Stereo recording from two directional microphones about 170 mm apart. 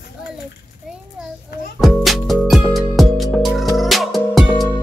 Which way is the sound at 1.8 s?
Centre (ahead or behind).